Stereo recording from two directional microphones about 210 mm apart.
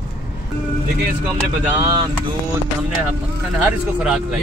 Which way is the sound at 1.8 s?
20° right (ahead or behind).